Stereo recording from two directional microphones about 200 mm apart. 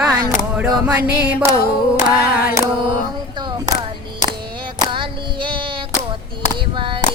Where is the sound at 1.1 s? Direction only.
10° right (ahead or behind).